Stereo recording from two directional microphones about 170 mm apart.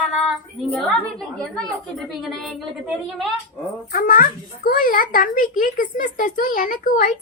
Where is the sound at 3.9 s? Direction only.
55° left (ahead or behind).